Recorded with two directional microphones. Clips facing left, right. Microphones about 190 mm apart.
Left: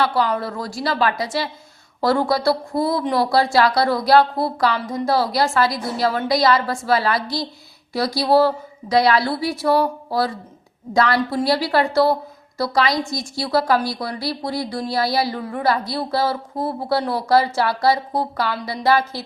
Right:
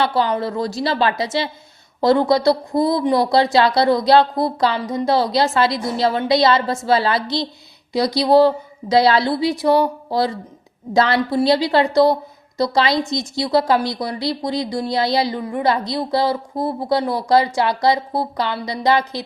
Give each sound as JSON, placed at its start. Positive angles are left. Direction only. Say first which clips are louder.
{"t": 0.0, "sound": "a woman's voice", "louder": "right 1 dB", "side_deg": -25}
{"t": 11.2, "sound": "speech", "louder": "right 3 dB", "side_deg": -10}
{"t": 11.4, "sound": "a woman's voice", "louder": "right 4 dB", "side_deg": -20}